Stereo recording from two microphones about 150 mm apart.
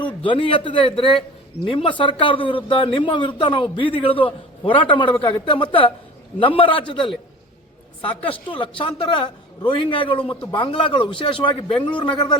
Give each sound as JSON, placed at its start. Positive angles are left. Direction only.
{"t": 0.2, "sound": "a man's voice", "side_deg": 40}
{"t": 8.3, "sound": "a man's voice", "side_deg": 35}